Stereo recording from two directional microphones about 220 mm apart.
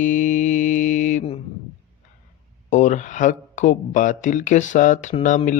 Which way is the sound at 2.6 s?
35° left (ahead or behind).